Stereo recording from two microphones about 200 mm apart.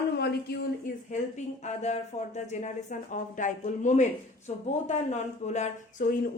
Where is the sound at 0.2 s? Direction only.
55° left (ahead or behind).